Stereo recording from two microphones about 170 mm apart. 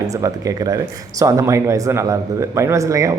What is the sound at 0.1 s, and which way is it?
Speech, 20° right (ahead or behind).